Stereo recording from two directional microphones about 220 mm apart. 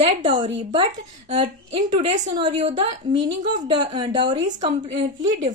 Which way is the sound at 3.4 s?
35° right (ahead or behind).